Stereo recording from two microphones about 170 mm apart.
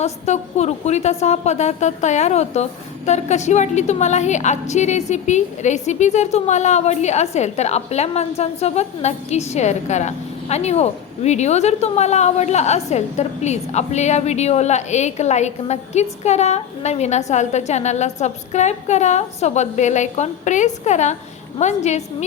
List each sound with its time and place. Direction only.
0.0 s a woman's voice: 40° left (ahead or behind)